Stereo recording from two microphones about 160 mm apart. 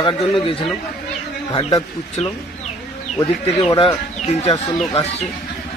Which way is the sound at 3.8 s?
40° left (ahead or behind).